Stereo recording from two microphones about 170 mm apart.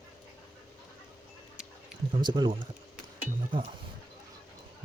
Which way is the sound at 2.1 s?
25° right (ahead or behind).